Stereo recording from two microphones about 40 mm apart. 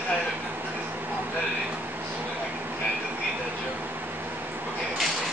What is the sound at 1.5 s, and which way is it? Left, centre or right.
Air conditioning, right.